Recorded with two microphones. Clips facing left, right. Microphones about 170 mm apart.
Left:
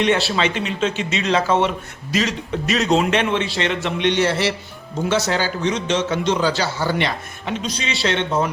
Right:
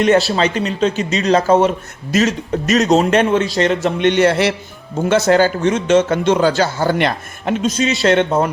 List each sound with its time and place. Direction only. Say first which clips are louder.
0.0 s a man's voice: right 5 dB; 40° right (ahead or behind)